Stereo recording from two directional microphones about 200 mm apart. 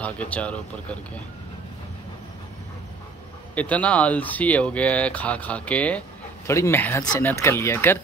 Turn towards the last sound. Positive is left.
turn(degrees=10)  # may be behind; listen again after turning